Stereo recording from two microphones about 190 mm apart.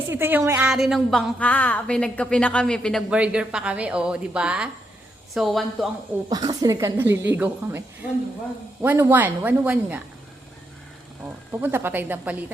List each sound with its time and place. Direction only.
0.1 s a woman's voice: 10° right (ahead or behind)
6.2 s a woman's voice: 20° right (ahead or behind)
11.5 s a woman's voice: 10° right (ahead or behind)